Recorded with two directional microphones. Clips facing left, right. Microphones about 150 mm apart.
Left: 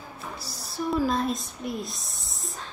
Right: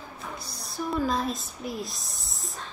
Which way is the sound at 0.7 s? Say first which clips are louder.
Left 2 dB; centre (ahead or behind).